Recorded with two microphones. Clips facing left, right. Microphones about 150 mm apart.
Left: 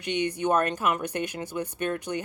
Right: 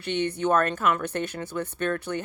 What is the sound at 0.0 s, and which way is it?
A woman's voice, 15° left (ahead or behind).